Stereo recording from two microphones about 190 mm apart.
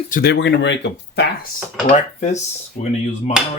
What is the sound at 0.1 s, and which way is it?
Speech, 55° left (ahead or behind).